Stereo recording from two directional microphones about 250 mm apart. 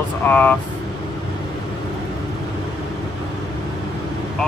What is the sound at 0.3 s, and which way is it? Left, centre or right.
Speech, centre.